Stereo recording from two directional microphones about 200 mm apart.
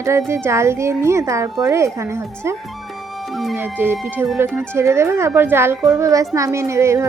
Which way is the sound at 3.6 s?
10° right (ahead or behind).